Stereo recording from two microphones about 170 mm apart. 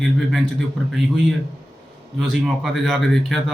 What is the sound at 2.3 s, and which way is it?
A man's voice, centre (ahead or behind).